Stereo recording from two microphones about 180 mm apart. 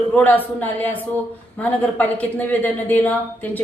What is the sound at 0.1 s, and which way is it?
A woman's voice, 10° left (ahead or behind).